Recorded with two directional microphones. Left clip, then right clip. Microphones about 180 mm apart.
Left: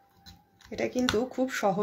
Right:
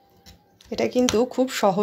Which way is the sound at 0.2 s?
30° right (ahead or behind).